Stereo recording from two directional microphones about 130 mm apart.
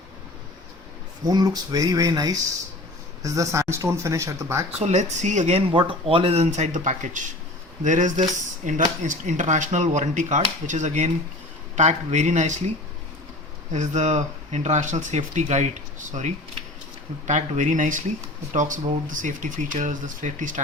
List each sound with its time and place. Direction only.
1.2 s speech: 30° right (ahead or behind)
4.8 s speech: 60° right (ahead or behind)
13.7 s speech: 60° right (ahead or behind); by 20.6 s 85° right